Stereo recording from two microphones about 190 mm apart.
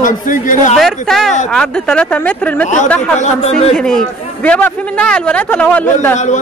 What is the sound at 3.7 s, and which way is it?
A man's voice, 5° left (ahead or behind).